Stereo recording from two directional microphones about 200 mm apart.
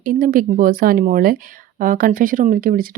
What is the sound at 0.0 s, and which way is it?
Speech, 45° right (ahead or behind).